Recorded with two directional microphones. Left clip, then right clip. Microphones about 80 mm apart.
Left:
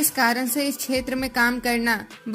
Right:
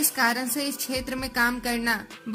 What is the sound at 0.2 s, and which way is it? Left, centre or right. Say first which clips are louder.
A woman's voice: left 3 dB; left.